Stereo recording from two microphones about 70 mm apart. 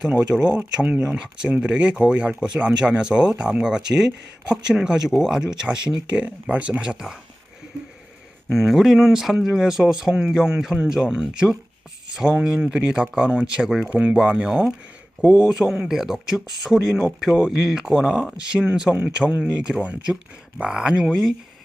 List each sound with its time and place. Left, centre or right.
0.0 s speech: centre
8.4 s speech: centre